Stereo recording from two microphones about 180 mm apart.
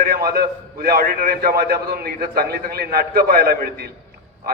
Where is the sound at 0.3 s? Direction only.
55° right (ahead or behind).